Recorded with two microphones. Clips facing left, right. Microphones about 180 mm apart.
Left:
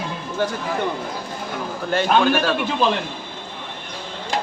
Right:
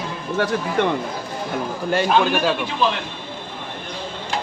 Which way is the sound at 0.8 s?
90° right.